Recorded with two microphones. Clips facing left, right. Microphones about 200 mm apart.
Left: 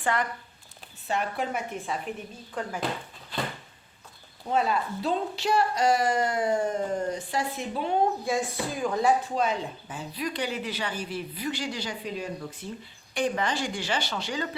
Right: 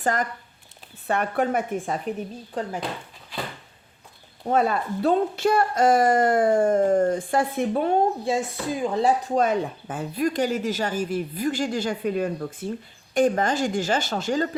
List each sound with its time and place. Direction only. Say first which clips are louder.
0.0 s speech: right 3 dB; 40° right (ahead or behind)
1.0 s speech: right 6 dB; 55° right (ahead or behind)
4.4 s speech: right 4 dB; 50° right (ahead or behind)
8.2 s speech: right 3 dB; 25° right (ahead or behind); by 14.5 s 45° right (ahead or behind)